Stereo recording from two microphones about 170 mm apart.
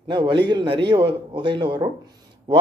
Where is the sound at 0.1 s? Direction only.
30° right (ahead or behind).